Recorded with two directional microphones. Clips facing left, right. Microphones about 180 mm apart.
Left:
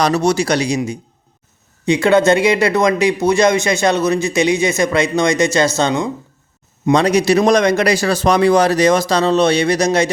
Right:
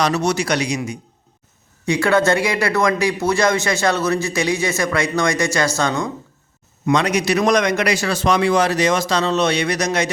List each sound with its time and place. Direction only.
0.0 s a man's voice: 35° left (ahead or behind)
1.8 s speech: 20° left (ahead or behind)
6.8 s a man's voice: 30° left (ahead or behind)